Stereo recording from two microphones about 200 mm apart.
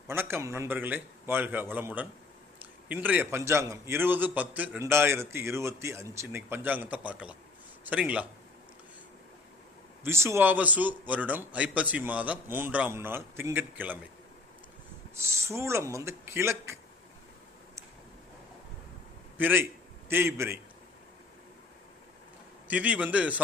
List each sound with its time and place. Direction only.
0.1 s a man's voice: 10° right (ahead or behind)
10.0 s a man's voice: 15° right (ahead or behind)
15.1 s a man's voice: 15° right (ahead or behind)
19.4 s a man's voice: 10° right (ahead or behind)
22.6 s a man's voice: 5° right (ahead or behind)